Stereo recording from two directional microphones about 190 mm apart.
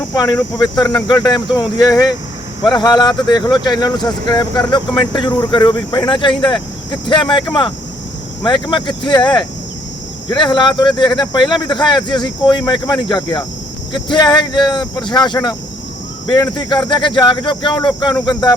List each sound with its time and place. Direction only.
0.1 s speech: 20° left (ahead or behind)
8.4 s speech: 25° left (ahead or behind)